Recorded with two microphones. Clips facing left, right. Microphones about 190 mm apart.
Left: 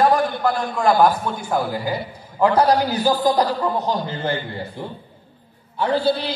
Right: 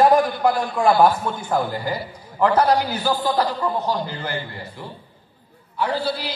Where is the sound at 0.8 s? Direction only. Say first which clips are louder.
Even; 10° right (ahead or behind).